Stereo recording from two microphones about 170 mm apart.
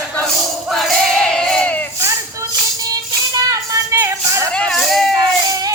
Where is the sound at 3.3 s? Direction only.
20° right (ahead or behind).